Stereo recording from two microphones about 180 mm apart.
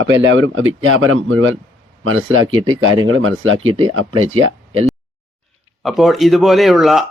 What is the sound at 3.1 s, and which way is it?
Speech, 90° right.